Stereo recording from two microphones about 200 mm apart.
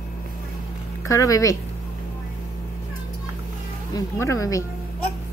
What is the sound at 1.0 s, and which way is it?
Speech, 15° left (ahead or behind).